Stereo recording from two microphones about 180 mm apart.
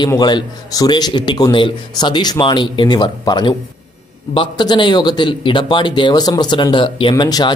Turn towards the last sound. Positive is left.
turn(degrees=25)  # may be behind; listen again after turning